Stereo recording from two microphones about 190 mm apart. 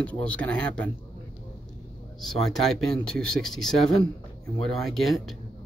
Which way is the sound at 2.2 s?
Centre (ahead or behind).